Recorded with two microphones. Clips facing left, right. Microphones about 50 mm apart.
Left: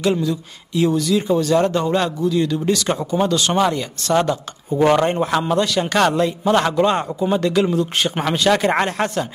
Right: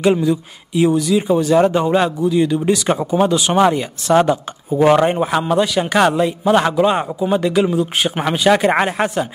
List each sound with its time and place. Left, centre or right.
0.0 s speech: right